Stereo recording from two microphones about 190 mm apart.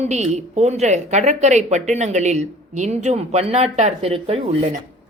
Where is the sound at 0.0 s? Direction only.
35° right (ahead or behind).